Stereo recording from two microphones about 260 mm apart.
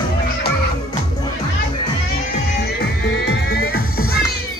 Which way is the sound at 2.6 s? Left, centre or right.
Left.